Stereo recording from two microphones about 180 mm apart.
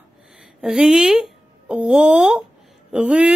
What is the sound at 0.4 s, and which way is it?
Speech, 5° right (ahead or behind).